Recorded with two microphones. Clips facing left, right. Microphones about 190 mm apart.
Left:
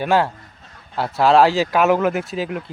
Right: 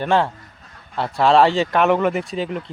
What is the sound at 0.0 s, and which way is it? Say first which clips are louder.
Speech: left 1 dB; 5° left (ahead or behind).